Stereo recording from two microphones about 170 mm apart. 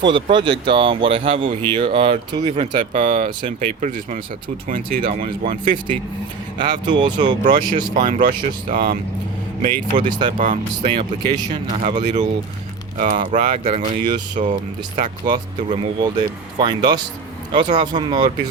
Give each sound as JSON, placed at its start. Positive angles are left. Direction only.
{"t": 0.0, "sound": "speech", "side_deg": -30}
{"t": 2.9, "sound": "speech", "side_deg": -50}
{"t": 6.6, "sound": "speech", "side_deg": -25}
{"t": 7.9, "sound": "speech", "side_deg": -55}
{"t": 10.1, "sound": "speech", "side_deg": -25}
{"t": 10.3, "sound": "speech", "side_deg": -50}
{"t": 10.9, "sound": "speech", "side_deg": -25}
{"t": 11.5, "sound": "speech", "side_deg": -45}
{"t": 13.0, "sound": "speech", "side_deg": -50}
{"t": 15.3, "sound": "speech", "side_deg": -30}